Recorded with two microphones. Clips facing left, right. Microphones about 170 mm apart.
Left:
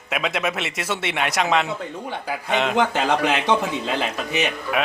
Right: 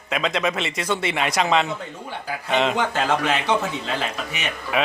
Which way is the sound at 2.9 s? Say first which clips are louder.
Left 1 dB; 15° left (ahead or behind).